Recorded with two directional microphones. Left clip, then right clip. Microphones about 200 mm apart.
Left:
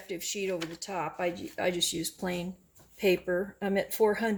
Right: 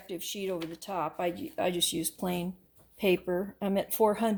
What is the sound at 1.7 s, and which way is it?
Speech, 5° left (ahead or behind).